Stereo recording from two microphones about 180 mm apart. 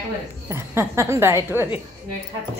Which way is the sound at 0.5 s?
15° right (ahead or behind).